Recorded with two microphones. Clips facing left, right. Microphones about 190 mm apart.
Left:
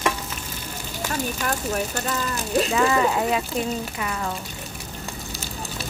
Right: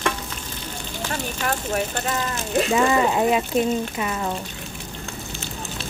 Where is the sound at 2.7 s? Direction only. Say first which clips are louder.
Right 3 dB; 20° right (ahead or behind).